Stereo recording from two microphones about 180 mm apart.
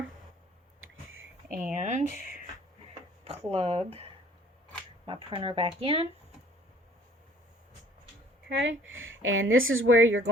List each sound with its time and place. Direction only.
1.5 s speech: 45° right (ahead or behind)
3.2 s speech: 35° right (ahead or behind)
8.4 s speech: 85° right